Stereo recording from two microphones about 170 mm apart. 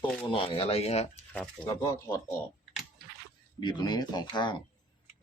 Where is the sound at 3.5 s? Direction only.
25° left (ahead or behind).